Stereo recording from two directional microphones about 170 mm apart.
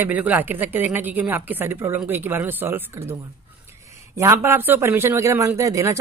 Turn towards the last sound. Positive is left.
turn(degrees=-20)  # may be behind; listen again after turning